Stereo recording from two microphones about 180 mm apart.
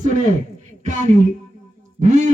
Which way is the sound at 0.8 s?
45° right (ahead or behind).